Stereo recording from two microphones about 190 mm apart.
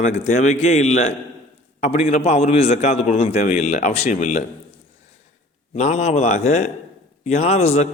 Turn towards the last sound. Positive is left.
turn(degrees=35)  # may be behind; listen again after turning